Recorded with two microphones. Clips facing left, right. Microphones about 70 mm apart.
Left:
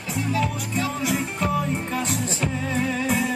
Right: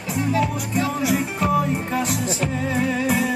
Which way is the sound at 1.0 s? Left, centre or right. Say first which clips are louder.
Right 3 dB; centre.